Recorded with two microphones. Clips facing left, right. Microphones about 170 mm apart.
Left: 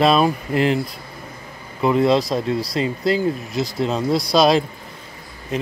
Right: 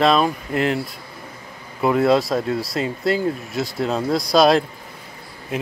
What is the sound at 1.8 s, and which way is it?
Speech, 5° right (ahead or behind).